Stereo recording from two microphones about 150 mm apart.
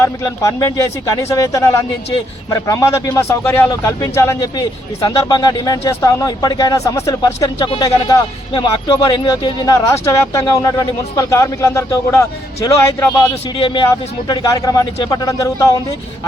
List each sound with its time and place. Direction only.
0.0 s speech: 20° left (ahead or behind)
13.6 s speech: 35° left (ahead or behind)
13.8 s speech: 25° left (ahead or behind)